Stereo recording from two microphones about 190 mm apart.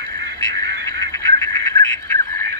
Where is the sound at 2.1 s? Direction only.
15° left (ahead or behind).